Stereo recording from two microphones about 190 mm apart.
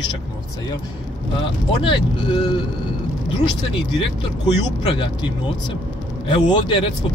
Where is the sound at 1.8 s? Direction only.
25° left (ahead or behind).